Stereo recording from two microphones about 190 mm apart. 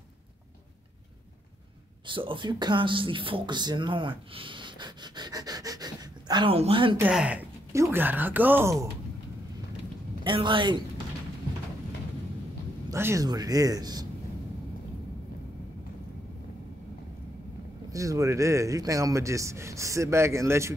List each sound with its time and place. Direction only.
2.0 s speech: 25° right (ahead or behind)
7.0 s a man's voice: 5° right (ahead or behind)
10.2 s speech: 25° right (ahead or behind)
12.9 s speech: 15° right (ahead or behind)
17.9 s a man's voice: 15° right (ahead or behind)